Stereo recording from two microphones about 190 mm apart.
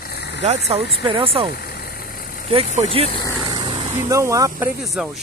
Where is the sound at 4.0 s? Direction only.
15° right (ahead or behind).